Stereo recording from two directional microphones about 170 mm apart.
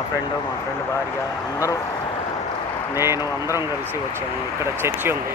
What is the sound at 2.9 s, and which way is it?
Speech, 15° right (ahead or behind).